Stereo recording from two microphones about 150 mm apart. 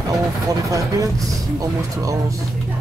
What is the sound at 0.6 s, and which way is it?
Speech, 20° right (ahead or behind).